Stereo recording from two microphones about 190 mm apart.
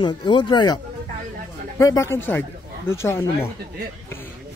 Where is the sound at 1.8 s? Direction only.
15° left (ahead or behind).